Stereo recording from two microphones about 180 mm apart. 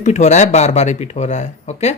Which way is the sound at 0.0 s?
40° left (ahead or behind).